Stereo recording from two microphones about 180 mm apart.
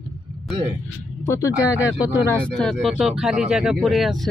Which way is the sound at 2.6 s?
Centre (ahead or behind).